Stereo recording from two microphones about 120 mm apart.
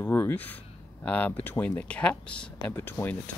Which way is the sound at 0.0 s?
20° left (ahead or behind).